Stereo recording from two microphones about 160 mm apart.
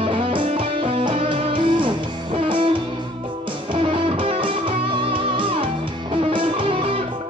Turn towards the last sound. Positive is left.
turn(degrees=-30)  # may be behind; listen again after turning